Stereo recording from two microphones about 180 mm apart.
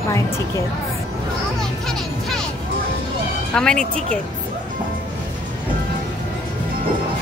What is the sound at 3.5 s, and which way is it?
Speech, 5° left (ahead or behind).